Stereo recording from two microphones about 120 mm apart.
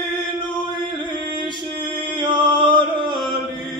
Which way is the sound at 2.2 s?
40° right (ahead or behind).